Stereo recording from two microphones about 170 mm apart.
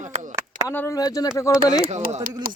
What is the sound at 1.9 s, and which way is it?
Speech, 40° right (ahead or behind).